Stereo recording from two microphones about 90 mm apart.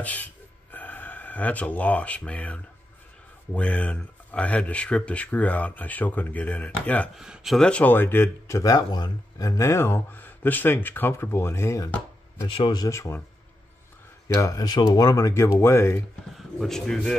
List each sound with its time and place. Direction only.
0.0 s gasp: 20° left (ahead or behind)
3.5 s speech: 15° left (ahead or behind)
7.2 s speech: 5° right (ahead or behind)
7.5 s speech: 10° left (ahead or behind); by 8.7 s 35° left (ahead or behind)
8.7 s speech: 50° left (ahead or behind)
9.5 s speech: 35° left (ahead or behind)
12.4 s speech: 90° left
12.9 s speech: 30° left (ahead or behind)
14.2 s speech: 35° left (ahead or behind)
16.3 s speech: 5° left (ahead or behind)